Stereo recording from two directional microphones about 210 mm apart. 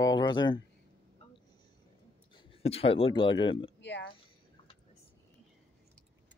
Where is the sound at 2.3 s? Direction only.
30° left (ahead or behind).